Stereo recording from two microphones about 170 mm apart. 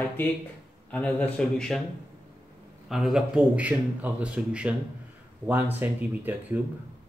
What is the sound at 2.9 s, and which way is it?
A man's voice, centre (ahead or behind).